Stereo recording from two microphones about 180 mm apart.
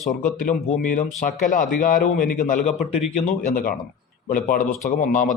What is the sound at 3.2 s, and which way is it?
Speech, 50° left (ahead or behind).